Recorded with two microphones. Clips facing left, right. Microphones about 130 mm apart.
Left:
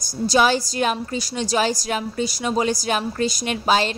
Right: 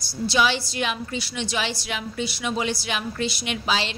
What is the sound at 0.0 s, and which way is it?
A woman's voice, 45° left (ahead or behind).